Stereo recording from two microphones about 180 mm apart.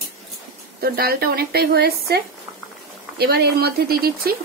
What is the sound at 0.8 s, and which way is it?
A woman's voice, 60° right (ahead or behind).